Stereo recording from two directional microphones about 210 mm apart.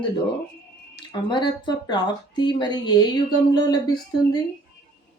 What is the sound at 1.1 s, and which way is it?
A woman's voice, 20° left (ahead or behind).